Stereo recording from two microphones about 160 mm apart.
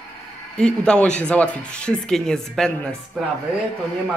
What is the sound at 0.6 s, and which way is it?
Speech, 5° left (ahead or behind).